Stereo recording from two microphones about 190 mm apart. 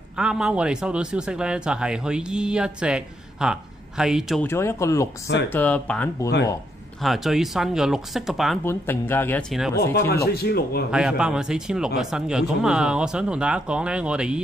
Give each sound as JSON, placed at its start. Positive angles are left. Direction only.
{"t": 0.2, "sound": "speech", "side_deg": -5}
{"t": 4.4, "sound": "speech", "side_deg": 15}
{"t": 8.6, "sound": "speech", "side_deg": 10}
{"t": 9.9, "sound": "a man's voice", "side_deg": 60}
{"t": 10.9, "sound": "speech", "side_deg": -5}